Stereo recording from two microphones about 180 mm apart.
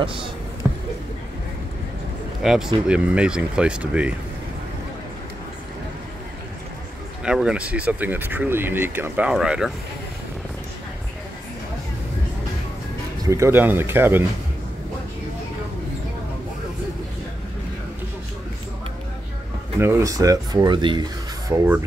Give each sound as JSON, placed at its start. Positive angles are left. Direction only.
{"t": 0.0, "sound": "speech", "side_deg": -30}
{"t": 2.4, "sound": "speech", "side_deg": -5}
{"t": 7.2, "sound": "speech", "side_deg": -5}
{"t": 13.2, "sound": "speech", "side_deg": -15}
{"t": 19.8, "sound": "speech", "side_deg": -15}